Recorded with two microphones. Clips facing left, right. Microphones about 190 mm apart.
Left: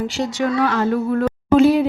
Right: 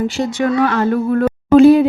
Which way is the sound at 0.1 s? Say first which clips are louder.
Right 3 dB; 55° right (ahead or behind).